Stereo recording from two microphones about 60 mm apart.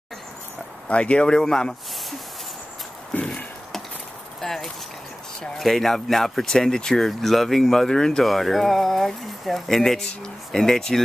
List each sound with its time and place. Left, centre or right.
0.8 s speech: left
3.1 s chop: centre
4.4 s a sound: centre
5.4 s speech: centre